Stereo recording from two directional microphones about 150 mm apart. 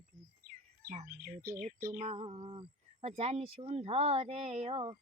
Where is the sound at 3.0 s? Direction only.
45° right (ahead or behind).